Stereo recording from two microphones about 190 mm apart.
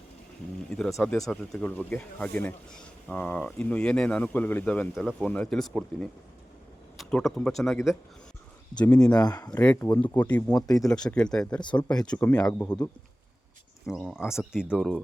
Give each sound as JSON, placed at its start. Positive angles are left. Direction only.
{"t": 0.9, "sound": "speech", "side_deg": 0}
{"t": 9.1, "sound": "speech", "side_deg": 20}
{"t": 9.5, "sound": "speech", "side_deg": 10}
{"t": 10.5, "sound": "speech", "side_deg": 20}
{"t": 10.9, "sound": "speech", "side_deg": 5}
{"t": 11.6, "sound": "speech", "side_deg": 25}
{"t": 11.9, "sound": "speech", "side_deg": 5}
{"t": 13.8, "sound": "speech", "side_deg": 0}